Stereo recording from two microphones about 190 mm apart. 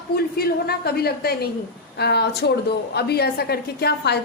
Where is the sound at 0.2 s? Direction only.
55° left (ahead or behind).